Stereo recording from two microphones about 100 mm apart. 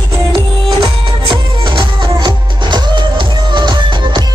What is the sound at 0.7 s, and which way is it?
Music, 50° right (ahead or behind).